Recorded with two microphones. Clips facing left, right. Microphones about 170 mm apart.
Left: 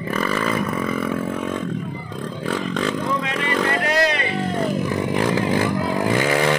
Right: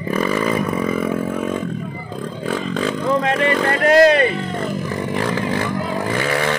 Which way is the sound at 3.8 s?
50° right (ahead or behind).